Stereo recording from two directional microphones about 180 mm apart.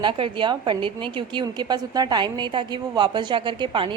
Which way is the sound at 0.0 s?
25° right (ahead or behind).